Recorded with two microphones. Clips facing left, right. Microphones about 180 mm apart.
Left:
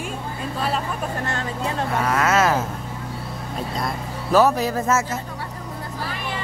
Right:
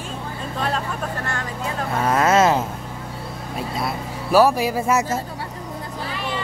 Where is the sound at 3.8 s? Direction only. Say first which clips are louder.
Right 1 dB; 10° right (ahead or behind).